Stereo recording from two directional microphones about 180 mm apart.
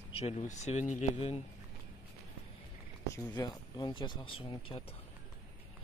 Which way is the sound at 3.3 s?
25° left (ahead or behind).